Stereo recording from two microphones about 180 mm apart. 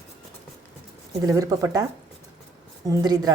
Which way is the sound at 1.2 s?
20° right (ahead or behind).